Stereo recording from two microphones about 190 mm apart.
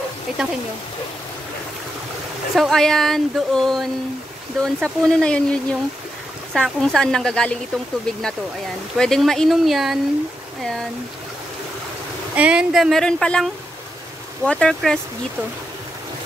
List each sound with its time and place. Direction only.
0.3 s speech: 5° right (ahead or behind)
2.5 s speech: centre (ahead or behind)
8.9 s speech: 5° left (ahead or behind)
12.4 s speech: 5° right (ahead or behind)